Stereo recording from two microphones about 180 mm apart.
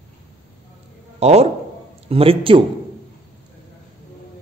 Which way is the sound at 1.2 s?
35° right (ahead or behind).